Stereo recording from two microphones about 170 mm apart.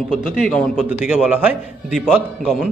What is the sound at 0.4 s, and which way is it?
Speech, 5° left (ahead or behind).